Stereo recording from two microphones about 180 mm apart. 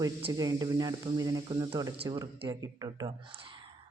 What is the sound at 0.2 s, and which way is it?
A woman's voice, 25° right (ahead or behind).